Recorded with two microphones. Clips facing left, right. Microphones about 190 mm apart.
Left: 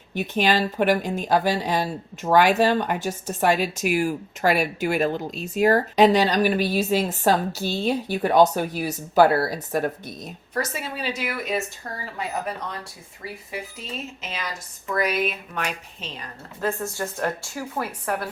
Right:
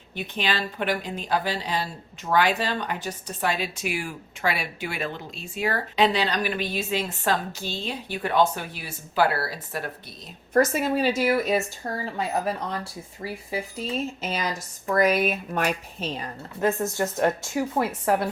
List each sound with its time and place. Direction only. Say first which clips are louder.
0.2 s speech: left 7 dB; 45° left (ahead or behind)
10.5 s speech: right 8 dB; 50° right (ahead or behind)
11.8 s speech: right 5 dB; 15° right (ahead or behind)
13.5 s speech: right 6 dB; 35° right (ahead or behind)
16.6 s speech: right 3 dB; 20° right (ahead or behind)